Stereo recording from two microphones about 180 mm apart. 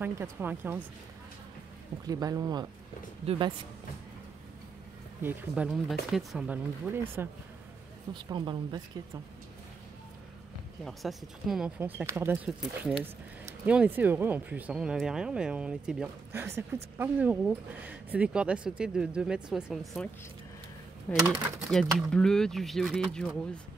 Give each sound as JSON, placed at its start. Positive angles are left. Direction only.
{"t": 0.0, "sound": "speech", "side_deg": -10}
{"t": 2.0, "sound": "speech", "side_deg": -20}
{"t": 5.2, "sound": "speech", "side_deg": -5}
{"t": 8.1, "sound": "speech", "side_deg": -25}
{"t": 10.8, "sound": "speech", "side_deg": 0}
{"t": 21.1, "sound": "speech", "side_deg": 10}